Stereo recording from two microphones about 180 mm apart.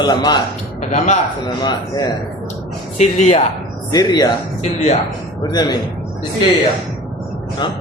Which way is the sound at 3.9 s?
20° left (ahead or behind).